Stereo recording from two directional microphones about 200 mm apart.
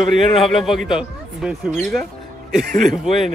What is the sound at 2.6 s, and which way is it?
Speech, 40° right (ahead or behind).